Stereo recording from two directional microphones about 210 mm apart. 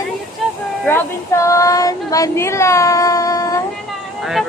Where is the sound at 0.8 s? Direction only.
10° left (ahead or behind).